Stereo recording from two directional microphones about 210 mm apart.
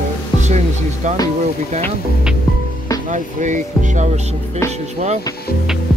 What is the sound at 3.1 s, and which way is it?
Speech, 35° right (ahead or behind).